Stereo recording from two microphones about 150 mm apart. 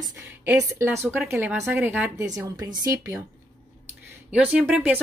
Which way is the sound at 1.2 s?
5° right (ahead or behind).